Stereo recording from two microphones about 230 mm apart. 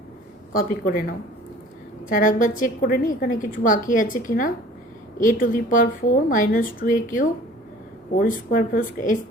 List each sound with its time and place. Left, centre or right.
0.5 s a woman's voice: left